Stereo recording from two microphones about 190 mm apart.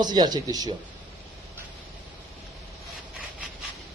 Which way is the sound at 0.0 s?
20° right (ahead or behind).